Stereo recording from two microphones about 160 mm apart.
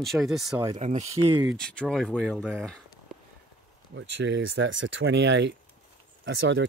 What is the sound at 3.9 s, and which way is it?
Speech, 90° right.